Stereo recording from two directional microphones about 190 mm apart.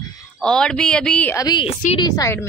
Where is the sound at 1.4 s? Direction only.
25° left (ahead or behind).